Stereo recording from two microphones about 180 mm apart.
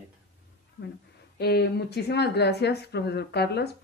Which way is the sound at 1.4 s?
65° left (ahead or behind).